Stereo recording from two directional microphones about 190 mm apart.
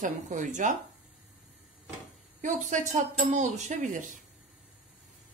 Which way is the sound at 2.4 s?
40° right (ahead or behind).